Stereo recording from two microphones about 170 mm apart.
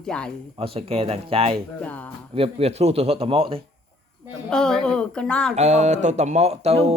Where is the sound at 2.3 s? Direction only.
35° right (ahead or behind).